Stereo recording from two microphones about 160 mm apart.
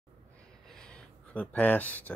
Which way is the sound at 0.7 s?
5° left (ahead or behind).